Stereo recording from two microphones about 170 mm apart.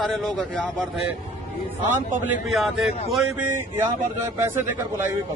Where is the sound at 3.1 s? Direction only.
10° right (ahead or behind).